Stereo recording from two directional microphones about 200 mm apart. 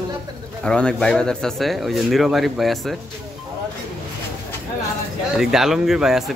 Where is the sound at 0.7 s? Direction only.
5° left (ahead or behind).